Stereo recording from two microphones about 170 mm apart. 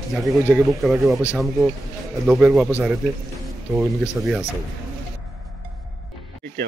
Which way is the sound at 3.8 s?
5° right (ahead or behind).